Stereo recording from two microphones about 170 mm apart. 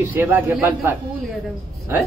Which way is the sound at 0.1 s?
10° right (ahead or behind).